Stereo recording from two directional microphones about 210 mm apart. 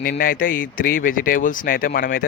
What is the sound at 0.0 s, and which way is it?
Speech, 45° left (ahead or behind).